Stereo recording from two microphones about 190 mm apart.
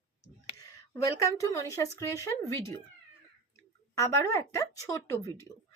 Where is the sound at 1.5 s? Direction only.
15° left (ahead or behind).